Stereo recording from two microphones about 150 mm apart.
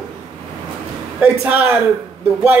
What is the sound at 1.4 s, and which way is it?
Speech, 10° right (ahead or behind).